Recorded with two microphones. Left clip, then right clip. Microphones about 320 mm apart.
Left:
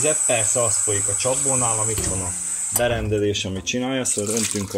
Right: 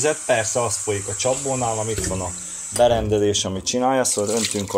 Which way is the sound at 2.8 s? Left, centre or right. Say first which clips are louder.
Right 5 dB; right.